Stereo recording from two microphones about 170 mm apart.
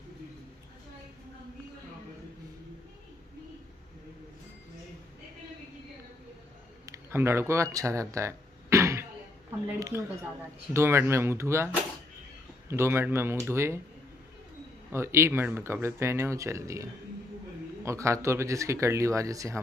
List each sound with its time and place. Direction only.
6.9 s a sound: 15° right (ahead or behind)
9.8 s speech: 20° right (ahead or behind)
14.9 s speech: 15° right (ahead or behind)